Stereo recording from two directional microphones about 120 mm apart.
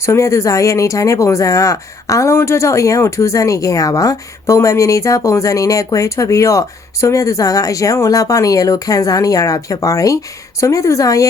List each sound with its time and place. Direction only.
0.0 s speech: 25° left (ahead or behind)